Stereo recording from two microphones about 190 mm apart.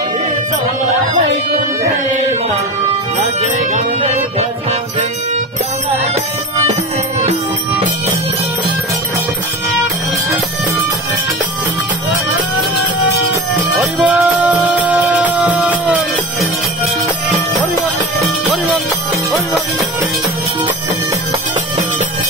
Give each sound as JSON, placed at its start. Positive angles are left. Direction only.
{"t": 3.3, "sound": "music", "side_deg": -35}
{"t": 6.7, "sound": "music", "side_deg": -40}
{"t": 13.9, "sound": "music", "side_deg": -5}
{"t": 18.2, "sound": "music", "side_deg": 0}